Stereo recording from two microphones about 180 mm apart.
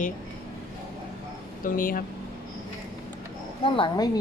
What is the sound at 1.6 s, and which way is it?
Speech, 50° left (ahead or behind).